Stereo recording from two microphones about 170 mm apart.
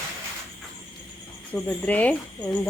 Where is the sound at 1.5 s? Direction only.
10° left (ahead or behind).